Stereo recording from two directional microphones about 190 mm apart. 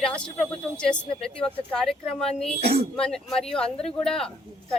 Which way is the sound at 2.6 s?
35° right (ahead or behind).